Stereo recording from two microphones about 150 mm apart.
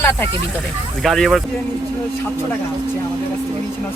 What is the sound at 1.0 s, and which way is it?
Speech, centre (ahead or behind).